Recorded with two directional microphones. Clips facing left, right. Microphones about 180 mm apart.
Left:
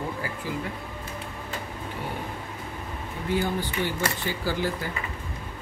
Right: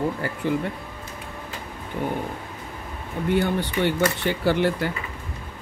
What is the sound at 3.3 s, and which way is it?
Speech, 65° right (ahead or behind).